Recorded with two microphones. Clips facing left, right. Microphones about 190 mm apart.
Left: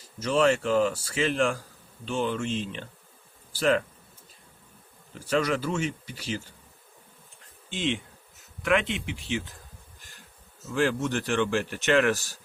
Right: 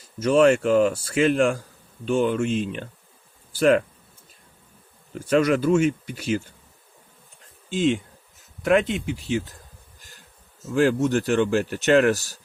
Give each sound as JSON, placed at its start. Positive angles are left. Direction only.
{"t": 0.2, "sound": "a man's voice", "side_deg": -50}
{"t": 3.5, "sound": "a man's voice", "side_deg": -55}
{"t": 5.2, "sound": "a man's voice", "side_deg": -50}
{"t": 7.7, "sound": "a man's voice", "side_deg": -45}
{"t": 10.7, "sound": "speech", "side_deg": -45}